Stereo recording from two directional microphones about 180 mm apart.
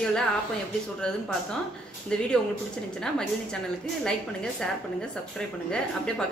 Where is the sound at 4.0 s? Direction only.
5° left (ahead or behind).